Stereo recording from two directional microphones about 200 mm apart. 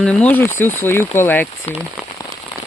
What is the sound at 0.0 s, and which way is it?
Speech, 5° left (ahead or behind).